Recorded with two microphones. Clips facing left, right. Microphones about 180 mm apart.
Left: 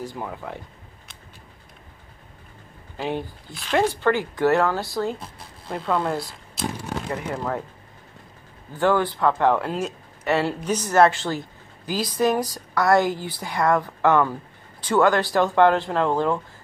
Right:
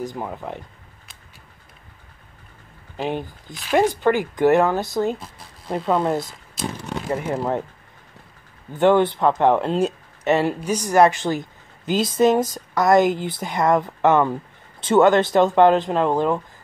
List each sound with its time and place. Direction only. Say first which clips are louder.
0.0 s speech: right 3 dB; 20° right (ahead or behind)
3.0 s speech: right 2 dB; 15° right (ahead or behind)
6.2 s a sound: even; 5° left (ahead or behind)
7.1 s speech: right 6 dB; 25° right (ahead or behind)
8.7 s speech: right 5 dB; 20° right (ahead or behind)
10.3 s speech: right 2 dB; 10° right (ahead or behind)